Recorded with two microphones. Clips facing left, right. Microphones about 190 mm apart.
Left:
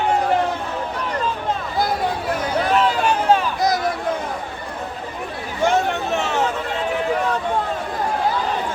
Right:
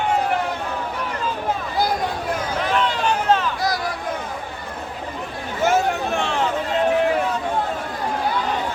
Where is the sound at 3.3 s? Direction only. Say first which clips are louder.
Left 3 dB; 20° left (ahead or behind).